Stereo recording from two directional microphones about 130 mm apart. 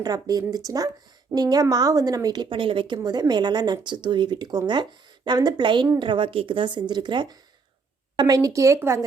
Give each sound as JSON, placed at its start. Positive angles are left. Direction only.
{"t": 0.0, "sound": "a woman's voice", "side_deg": -30}